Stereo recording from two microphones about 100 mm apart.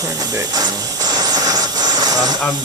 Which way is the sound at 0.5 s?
40° right (ahead or behind).